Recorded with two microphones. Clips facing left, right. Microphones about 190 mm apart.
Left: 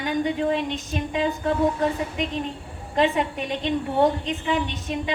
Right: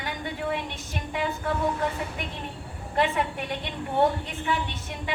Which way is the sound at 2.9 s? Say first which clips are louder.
Left 4 dB; 20° left (ahead or behind).